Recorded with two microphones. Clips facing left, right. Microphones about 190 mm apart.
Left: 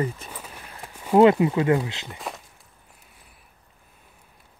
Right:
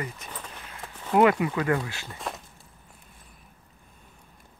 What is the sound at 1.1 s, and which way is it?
Speech, 25° left (ahead or behind).